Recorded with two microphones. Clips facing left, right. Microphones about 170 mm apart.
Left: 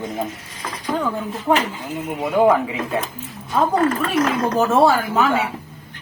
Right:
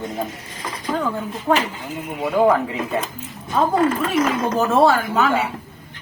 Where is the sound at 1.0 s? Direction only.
15° left (ahead or behind).